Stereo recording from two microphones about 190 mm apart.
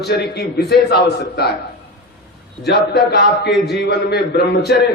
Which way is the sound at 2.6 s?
60° left (ahead or behind).